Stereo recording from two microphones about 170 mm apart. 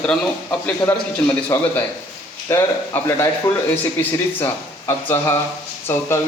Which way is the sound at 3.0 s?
15° left (ahead or behind).